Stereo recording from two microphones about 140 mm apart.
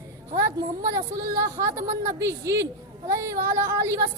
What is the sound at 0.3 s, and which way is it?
Speech, 25° right (ahead or behind).